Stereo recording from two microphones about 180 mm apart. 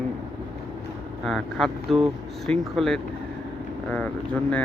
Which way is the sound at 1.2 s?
Centre (ahead or behind).